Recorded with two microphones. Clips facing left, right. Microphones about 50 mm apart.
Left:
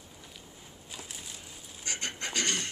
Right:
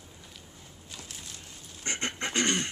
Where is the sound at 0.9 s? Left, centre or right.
Centre.